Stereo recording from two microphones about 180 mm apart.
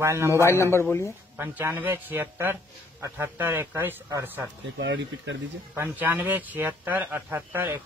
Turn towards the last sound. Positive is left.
turn(degrees=-10)  # may be behind; listen again after turning